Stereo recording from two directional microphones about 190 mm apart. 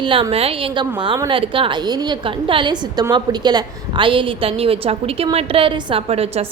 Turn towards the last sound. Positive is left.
turn(degrees=-30)  # may be behind; listen again after turning